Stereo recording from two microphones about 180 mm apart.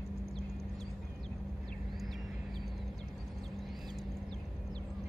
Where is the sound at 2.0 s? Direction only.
Centre (ahead or behind).